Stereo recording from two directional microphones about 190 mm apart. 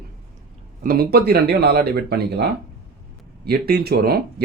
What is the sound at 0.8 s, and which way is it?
Speech, 50° right (ahead or behind).